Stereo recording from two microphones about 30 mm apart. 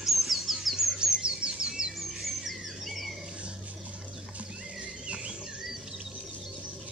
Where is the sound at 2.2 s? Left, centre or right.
Centre.